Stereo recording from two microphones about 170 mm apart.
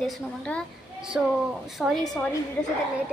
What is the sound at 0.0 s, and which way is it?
Speech, 5° left (ahead or behind).